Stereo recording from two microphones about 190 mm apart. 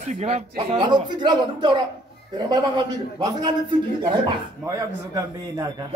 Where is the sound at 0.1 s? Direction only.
35° right (ahead or behind).